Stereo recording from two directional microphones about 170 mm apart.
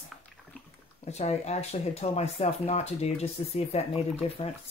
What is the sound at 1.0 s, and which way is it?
Speech, 40° left (ahead or behind).